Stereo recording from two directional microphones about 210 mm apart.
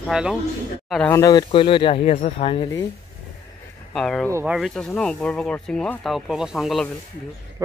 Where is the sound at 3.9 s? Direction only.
Centre (ahead or behind).